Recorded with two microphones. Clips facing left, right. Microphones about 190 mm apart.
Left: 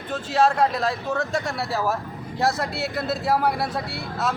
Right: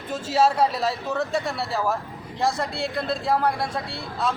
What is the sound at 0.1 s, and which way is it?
Speech, 5° right (ahead or behind).